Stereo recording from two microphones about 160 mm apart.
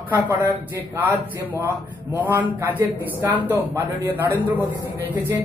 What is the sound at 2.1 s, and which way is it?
A man's voice, 10° right (ahead or behind).